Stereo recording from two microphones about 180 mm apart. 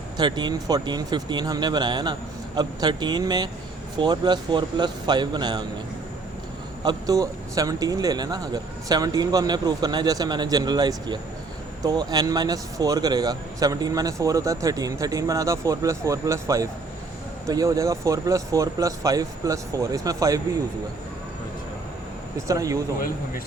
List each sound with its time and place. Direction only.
0.2 s speech: 25° right (ahead or behind)
6.8 s speech: 20° right (ahead or behind)
22.4 s speech: 20° right (ahead or behind)